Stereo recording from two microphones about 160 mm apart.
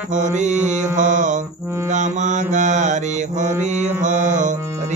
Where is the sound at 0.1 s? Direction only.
50° right (ahead or behind).